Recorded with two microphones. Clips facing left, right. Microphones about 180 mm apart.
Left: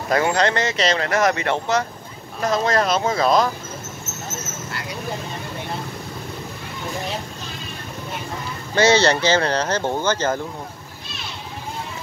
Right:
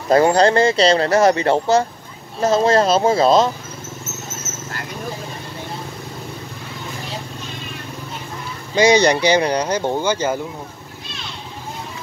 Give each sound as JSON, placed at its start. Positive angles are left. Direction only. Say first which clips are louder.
{"t": 0.1, "sound": "speech", "louder": "right 6 dB", "side_deg": -35}
{"t": 4.5, "sound": "a sound", "louder": "even", "side_deg": 55}
{"t": 8.7, "sound": "speech", "louder": "right 2 dB", "side_deg": -15}